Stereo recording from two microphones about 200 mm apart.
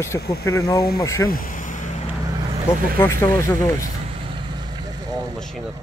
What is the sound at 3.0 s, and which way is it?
Speech, 10° left (ahead or behind).